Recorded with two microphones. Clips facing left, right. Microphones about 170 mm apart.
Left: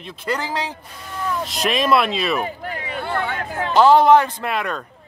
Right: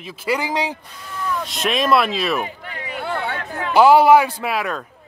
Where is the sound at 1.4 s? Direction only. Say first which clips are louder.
Even; centre (ahead or behind).